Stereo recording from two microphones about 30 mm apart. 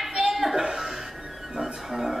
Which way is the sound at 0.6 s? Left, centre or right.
Centre.